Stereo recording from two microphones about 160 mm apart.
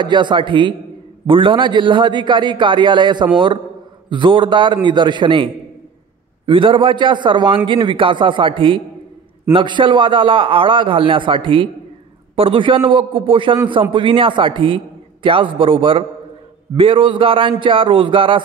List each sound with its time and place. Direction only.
0.0 s a man's voice: 30° right (ahead or behind)